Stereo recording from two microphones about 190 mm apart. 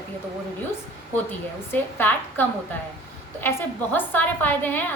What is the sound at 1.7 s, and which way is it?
A woman's voice, 10° left (ahead or behind).